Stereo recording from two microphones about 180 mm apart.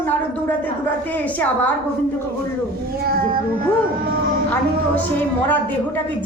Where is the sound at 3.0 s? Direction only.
55° right (ahead or behind).